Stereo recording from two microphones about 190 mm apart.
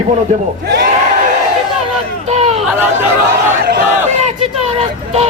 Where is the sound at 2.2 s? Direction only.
35° right (ahead or behind).